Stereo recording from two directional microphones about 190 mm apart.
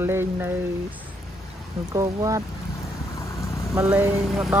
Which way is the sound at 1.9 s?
20° right (ahead or behind).